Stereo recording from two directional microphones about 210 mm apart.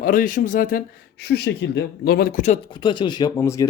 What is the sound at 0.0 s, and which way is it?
Speech, 40° left (ahead or behind).